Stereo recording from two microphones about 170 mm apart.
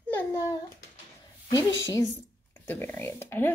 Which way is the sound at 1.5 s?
20° left (ahead or behind).